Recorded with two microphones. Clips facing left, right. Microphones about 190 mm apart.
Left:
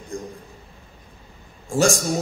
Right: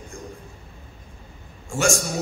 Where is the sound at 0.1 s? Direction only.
35° left (ahead or behind).